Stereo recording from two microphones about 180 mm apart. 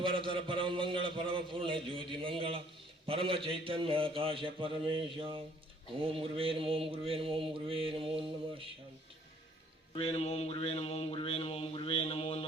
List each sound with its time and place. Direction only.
0.0 s a man's voice: 30° right (ahead or behind)
6.1 s mantra: 30° right (ahead or behind)
9.9 s a sound: 35° left (ahead or behind)